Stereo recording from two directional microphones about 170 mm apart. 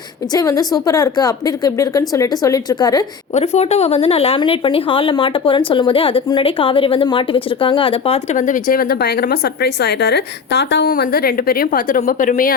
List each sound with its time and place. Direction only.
0.3 s a woman's voice: 20° left (ahead or behind)
3.3 s speech: 40° left (ahead or behind)
8.4 s speech: 50° left (ahead or behind); by 10.9 s 90° left
10.9 s a woman's voice: 60° left (ahead or behind)